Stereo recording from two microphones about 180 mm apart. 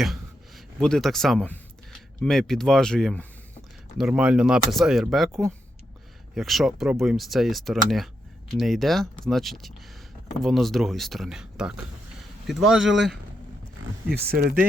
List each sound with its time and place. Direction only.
0.0 s speech: centre (ahead or behind)
6.3 s speech: centre (ahead or behind)
14.1 s speech: 60° right (ahead or behind)